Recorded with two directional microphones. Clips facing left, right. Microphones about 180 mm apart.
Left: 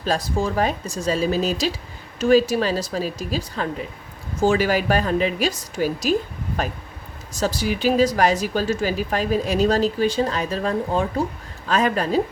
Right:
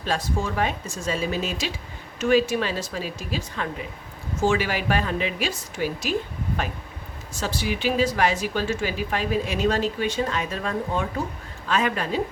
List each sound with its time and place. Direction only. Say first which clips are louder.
0.0 s a woman's voice: left 4 dB; 35° left (ahead or behind)
7.3 s a woman's voice: left 5 dB; 40° left (ahead or behind)